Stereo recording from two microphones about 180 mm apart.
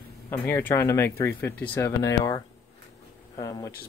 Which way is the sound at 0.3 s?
15° left (ahead or behind).